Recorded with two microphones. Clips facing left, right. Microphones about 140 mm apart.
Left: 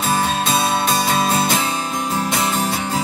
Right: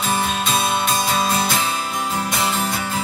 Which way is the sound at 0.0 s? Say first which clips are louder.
Left 2 dB; 35° left (ahead or behind).